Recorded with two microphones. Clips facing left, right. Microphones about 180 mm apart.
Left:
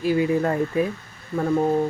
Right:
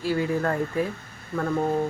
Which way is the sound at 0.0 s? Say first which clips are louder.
Left 4 dB; 15° left (ahead or behind).